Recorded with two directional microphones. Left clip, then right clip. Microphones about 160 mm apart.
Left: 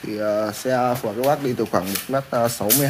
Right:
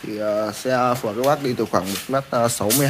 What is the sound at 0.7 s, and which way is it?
Speech, 10° right (ahead or behind).